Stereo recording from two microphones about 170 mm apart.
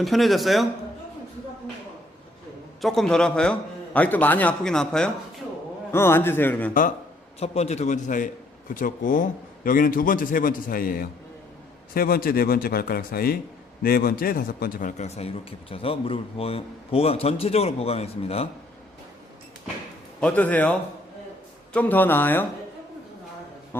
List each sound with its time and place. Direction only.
0.0 s a man's voice: centre (ahead or behind)
2.8 s a man's voice: centre (ahead or behind)
5.9 s speech: 15° left (ahead or behind)
7.3 s a man's voice: 40° left (ahead or behind)
20.2 s speech: 10° left (ahead or behind)